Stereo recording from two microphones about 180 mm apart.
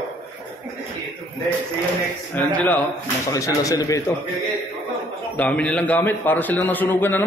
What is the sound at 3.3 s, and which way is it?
Speech, 20° left (ahead or behind).